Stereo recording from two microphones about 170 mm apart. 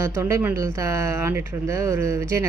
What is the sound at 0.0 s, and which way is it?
Speech, 15° right (ahead or behind).